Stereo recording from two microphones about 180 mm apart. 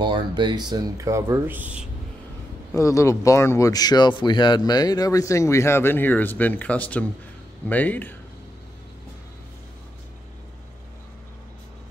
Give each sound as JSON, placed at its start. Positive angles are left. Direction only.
{"t": 0.0, "sound": "speech", "side_deg": -25}
{"t": 2.7, "sound": "speech", "side_deg": 15}